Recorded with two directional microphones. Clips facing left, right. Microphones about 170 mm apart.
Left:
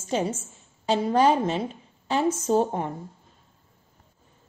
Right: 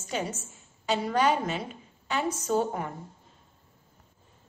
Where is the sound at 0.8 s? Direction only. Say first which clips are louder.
Left 5 dB; 30° left (ahead or behind).